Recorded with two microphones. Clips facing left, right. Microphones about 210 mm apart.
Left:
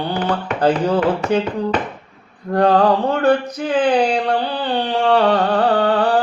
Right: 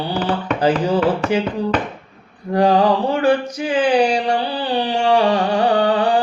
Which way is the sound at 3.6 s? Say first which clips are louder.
Right 1 dB; 10° right (ahead or behind).